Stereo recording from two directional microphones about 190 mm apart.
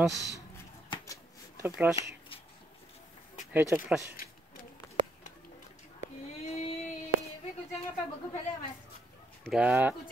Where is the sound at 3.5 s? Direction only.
10° right (ahead or behind).